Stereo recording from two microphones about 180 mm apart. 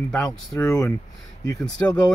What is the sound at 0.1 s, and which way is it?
Speech, 15° left (ahead or behind).